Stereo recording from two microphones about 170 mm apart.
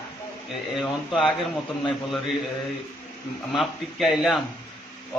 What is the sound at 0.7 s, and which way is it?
Speech, 5° left (ahead or behind).